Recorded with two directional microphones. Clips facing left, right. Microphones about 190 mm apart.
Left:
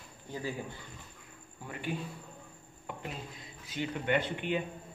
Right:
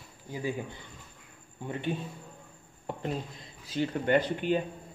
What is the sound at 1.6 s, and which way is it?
Speech, 25° right (ahead or behind).